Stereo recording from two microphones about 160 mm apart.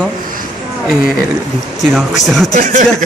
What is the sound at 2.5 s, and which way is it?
Speech, 50° right (ahead or behind).